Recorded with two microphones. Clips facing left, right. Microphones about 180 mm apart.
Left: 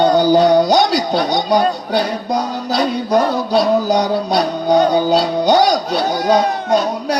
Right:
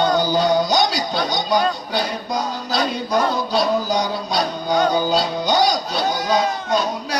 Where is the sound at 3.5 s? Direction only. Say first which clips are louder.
Left 7 dB; 65° left (ahead or behind).